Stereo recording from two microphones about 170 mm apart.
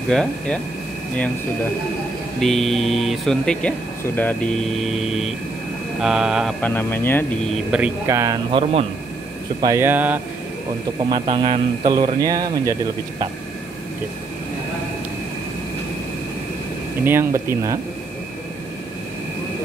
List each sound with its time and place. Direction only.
0.1 s speech: 5° left (ahead or behind)
2.4 s speech: centre (ahead or behind)
6.6 s speech: 10° left (ahead or behind)
7.7 s speech: 10° right (ahead or behind)
8.5 s a man's voice: 30° right (ahead or behind)
9.6 s speech: 15° right (ahead or behind)
11.0 s a man's voice: 25° right (ahead or behind)
17.0 s speech: 15° right (ahead or behind)